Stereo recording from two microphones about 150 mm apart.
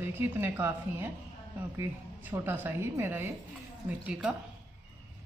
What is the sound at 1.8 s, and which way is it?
Speech, 15° right (ahead or behind).